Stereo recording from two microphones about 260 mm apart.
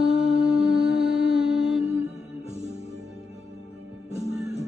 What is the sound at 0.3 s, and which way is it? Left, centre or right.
Music, centre.